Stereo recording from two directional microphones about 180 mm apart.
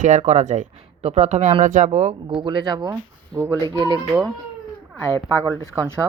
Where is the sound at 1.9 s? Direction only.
35° right (ahead or behind).